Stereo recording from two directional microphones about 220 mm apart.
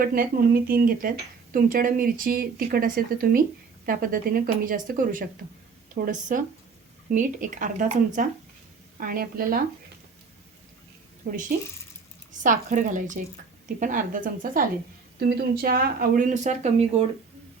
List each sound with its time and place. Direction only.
0.0 s speech: 40° right (ahead or behind)
11.2 s speech: 45° right (ahead or behind)
12.3 s speech: 35° right (ahead or behind)